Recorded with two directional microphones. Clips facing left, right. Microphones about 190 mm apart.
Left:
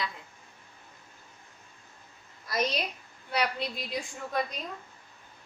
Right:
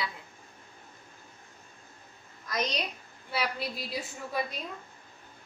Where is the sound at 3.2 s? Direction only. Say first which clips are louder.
Left 2 dB; 5° right (ahead or behind).